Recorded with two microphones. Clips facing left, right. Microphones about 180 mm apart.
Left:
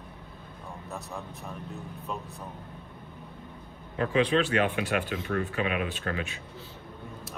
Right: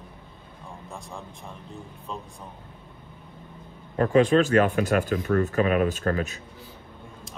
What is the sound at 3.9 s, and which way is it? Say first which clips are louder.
Speech: right 6 dB; 45° right (ahead or behind).